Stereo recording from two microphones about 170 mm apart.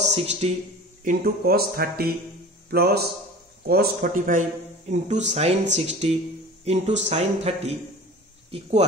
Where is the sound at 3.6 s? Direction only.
60° right (ahead or behind).